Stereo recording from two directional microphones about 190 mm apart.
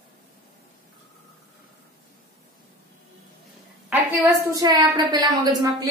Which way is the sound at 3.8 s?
15° right (ahead or behind).